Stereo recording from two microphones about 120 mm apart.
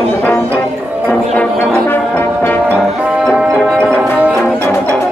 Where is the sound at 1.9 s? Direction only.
20° left (ahead or behind).